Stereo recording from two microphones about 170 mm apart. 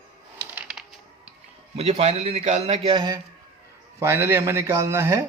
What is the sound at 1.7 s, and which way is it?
A man's voice, 35° right (ahead or behind).